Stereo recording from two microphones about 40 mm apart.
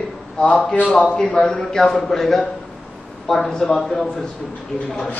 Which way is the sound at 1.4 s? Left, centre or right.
Centre.